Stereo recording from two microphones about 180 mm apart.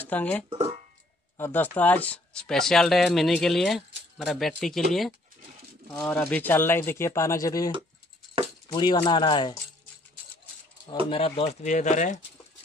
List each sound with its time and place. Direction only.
0.0 s speech: 10° left (ahead or behind)
0.5 s a sound: 35° right (ahead or behind)
1.4 s speech: 10° left (ahead or behind)
5.9 s speech: 5° left (ahead or behind)
8.7 s speech: 25° left (ahead or behind)
11.1 s speech: 30° left (ahead or behind)